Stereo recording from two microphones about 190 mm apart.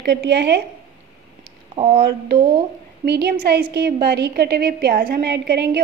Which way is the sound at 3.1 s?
60° right (ahead or behind).